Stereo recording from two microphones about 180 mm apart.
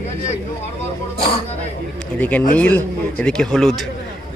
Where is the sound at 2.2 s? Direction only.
10° left (ahead or behind).